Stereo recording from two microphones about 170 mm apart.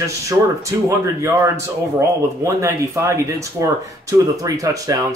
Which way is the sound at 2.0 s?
15° right (ahead or behind).